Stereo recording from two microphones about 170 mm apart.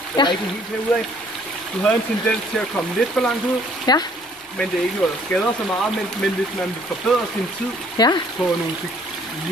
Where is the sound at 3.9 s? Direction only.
25° left (ahead or behind).